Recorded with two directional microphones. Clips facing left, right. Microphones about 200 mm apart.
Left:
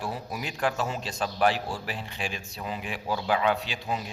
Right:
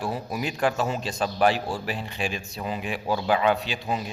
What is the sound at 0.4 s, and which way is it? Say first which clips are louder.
A man's voice: right 4 dB; 10° right (ahead or behind).